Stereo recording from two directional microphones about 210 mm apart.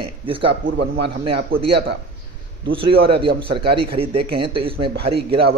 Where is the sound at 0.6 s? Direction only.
55° right (ahead or behind).